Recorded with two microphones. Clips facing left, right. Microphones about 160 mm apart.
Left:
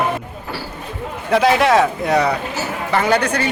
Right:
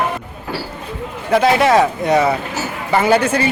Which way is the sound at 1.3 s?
Centre (ahead or behind).